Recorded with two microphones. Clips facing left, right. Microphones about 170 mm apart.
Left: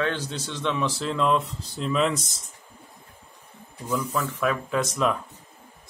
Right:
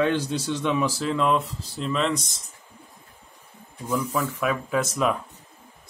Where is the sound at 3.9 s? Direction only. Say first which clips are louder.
Right 1 dB; 10° right (ahead or behind).